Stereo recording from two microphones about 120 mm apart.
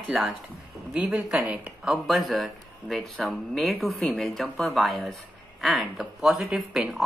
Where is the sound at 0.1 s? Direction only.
5° right (ahead or behind).